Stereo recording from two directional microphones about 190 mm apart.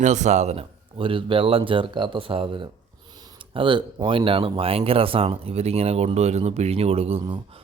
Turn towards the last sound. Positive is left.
turn(degrees=-30)  # may be behind; listen again after turning